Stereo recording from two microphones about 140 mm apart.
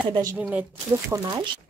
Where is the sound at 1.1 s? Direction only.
20° right (ahead or behind).